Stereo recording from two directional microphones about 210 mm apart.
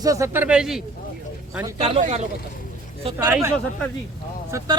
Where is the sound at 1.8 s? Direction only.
30° right (ahead or behind).